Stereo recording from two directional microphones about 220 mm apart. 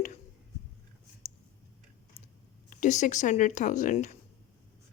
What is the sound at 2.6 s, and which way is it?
Speech, 35° left (ahead or behind).